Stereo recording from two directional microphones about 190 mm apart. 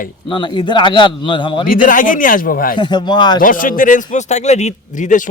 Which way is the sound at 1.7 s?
45° left (ahead or behind).